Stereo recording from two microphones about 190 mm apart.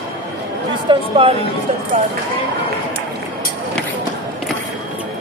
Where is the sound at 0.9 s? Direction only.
25° right (ahead or behind).